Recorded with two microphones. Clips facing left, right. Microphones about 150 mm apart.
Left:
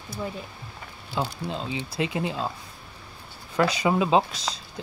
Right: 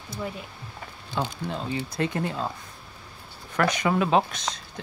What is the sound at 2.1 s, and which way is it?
Speech, 15° left (ahead or behind).